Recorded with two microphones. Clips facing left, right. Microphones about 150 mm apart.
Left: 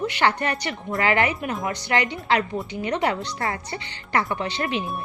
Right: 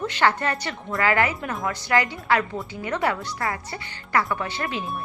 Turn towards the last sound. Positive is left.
turn(degrees=20)  # may be behind; listen again after turning